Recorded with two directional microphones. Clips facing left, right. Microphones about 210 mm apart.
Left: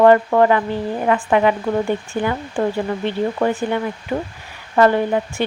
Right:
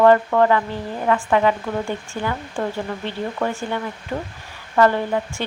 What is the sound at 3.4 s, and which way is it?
A woman's voice, 15° left (ahead or behind).